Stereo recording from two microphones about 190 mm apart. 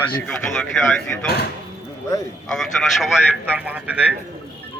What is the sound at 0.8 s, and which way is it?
Speech, 5° left (ahead or behind).